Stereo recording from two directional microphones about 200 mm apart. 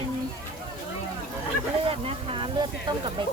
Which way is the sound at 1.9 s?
25° right (ahead or behind).